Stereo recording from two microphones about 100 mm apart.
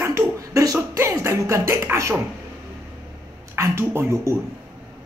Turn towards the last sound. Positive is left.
turn(degrees=-30)  # may be behind; listen again after turning